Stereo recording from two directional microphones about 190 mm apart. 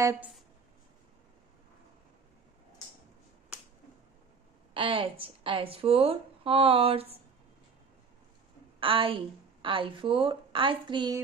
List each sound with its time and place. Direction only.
0.0 s speech: 15° right (ahead or behind)
4.7 s speech: 30° right (ahead or behind)
8.7 s speech: 25° right (ahead or behind)